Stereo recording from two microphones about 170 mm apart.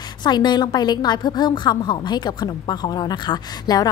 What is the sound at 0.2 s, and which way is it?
A woman's voice, 25° left (ahead or behind).